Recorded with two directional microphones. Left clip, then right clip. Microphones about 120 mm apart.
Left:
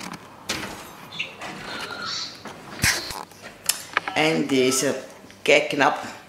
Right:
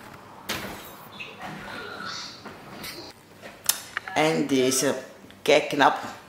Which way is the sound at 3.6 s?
5° right (ahead or behind).